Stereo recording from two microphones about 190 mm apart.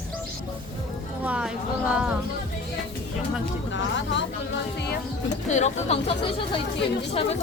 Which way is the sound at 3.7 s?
75° left (ahead or behind).